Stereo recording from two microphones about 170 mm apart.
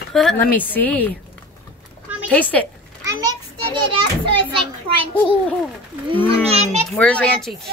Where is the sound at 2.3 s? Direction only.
10° left (ahead or behind).